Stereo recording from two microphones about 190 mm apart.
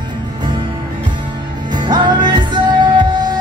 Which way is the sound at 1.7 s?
25° right (ahead or behind).